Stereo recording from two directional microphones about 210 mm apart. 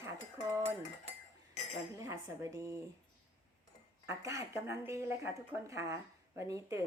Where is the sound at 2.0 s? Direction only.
15° right (ahead or behind).